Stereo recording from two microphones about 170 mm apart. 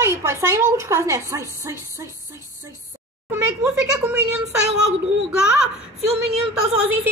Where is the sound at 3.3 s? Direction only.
10° right (ahead or behind).